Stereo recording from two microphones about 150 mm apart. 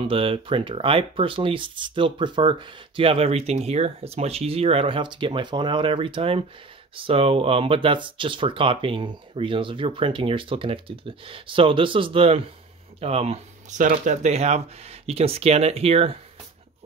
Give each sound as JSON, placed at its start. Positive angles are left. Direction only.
{"t": 0.0, "sound": "speech", "side_deg": -35}
{"t": 13.7, "sound": "speech", "side_deg": -55}